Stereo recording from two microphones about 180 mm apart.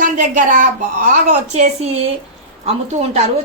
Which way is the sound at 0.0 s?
45° right (ahead or behind).